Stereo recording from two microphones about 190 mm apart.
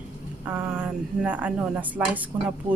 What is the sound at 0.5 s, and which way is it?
A woman's voice, 10° right (ahead or behind).